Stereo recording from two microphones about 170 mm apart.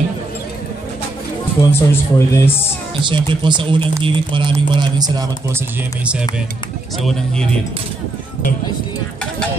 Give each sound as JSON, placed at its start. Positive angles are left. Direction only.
{"t": 1.7, "sound": "speech", "side_deg": 15}
{"t": 3.1, "sound": "speech", "side_deg": -30}